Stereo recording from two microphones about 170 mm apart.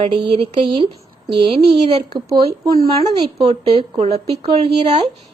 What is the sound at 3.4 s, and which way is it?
A woman's voice, 35° right (ahead or behind).